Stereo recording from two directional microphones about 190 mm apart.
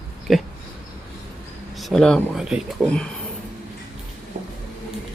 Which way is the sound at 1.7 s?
Centre (ahead or behind).